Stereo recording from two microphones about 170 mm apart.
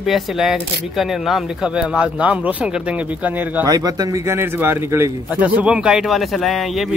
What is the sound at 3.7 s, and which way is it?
A man's voice, 20° right (ahead or behind).